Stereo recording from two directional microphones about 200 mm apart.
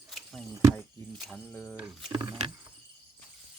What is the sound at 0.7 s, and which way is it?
Speech, 5° left (ahead or behind).